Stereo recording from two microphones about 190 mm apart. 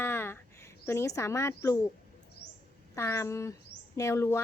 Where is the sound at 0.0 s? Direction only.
10° left (ahead or behind).